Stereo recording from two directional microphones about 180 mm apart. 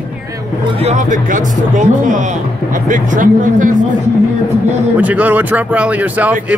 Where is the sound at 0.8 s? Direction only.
40° right (ahead or behind).